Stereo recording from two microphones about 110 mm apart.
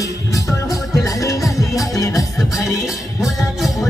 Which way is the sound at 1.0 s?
30° left (ahead or behind).